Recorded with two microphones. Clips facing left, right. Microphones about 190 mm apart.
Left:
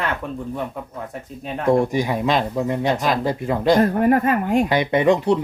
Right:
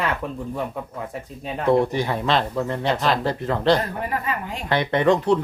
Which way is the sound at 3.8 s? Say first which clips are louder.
Left 11 dB; 50° left (ahead or behind).